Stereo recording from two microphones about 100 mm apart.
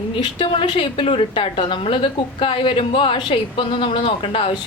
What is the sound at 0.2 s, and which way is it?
A woman's voice, 55° left (ahead or behind).